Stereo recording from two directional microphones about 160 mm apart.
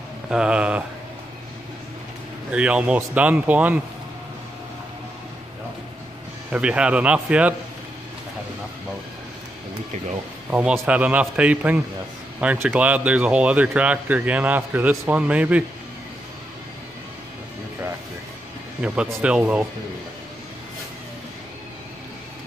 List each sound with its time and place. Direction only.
0.3 s speech: 5° right (ahead or behind)
2.5 s speech: 5° right (ahead or behind)
6.5 s speech: 5° right (ahead or behind)
10.5 s speech: 5° right (ahead or behind)
19.0 s speech: 10° right (ahead or behind)